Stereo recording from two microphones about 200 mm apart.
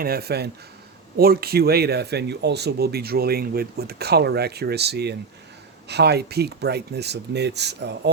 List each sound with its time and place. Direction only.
0.0 s speech: 50° right (ahead or behind)